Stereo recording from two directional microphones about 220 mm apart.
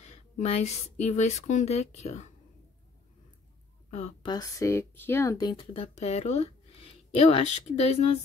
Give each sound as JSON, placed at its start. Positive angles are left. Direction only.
{"t": 0.0, "sound": "speech", "side_deg": 30}
{"t": 3.9, "sound": "speech", "side_deg": 25}